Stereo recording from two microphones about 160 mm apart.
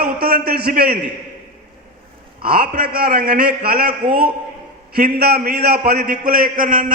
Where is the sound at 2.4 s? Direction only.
65° right (ahead or behind).